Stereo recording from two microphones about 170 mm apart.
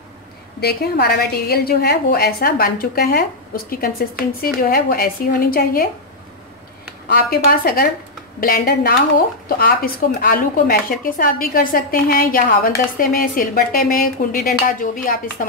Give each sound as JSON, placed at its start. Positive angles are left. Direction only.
{"t": 0.6, "sound": "speech", "side_deg": 70}
{"t": 7.1, "sound": "speech", "side_deg": 65}